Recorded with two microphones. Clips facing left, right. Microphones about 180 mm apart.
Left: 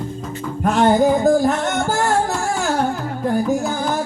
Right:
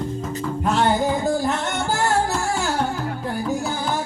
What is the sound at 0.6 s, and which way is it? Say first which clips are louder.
Music: left 6 dB; 45° left (ahead or behind).